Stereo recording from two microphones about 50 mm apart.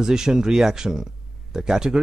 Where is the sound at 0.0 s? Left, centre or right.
Centre.